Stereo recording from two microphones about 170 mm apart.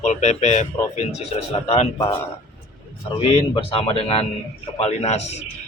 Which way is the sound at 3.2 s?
30° left (ahead or behind).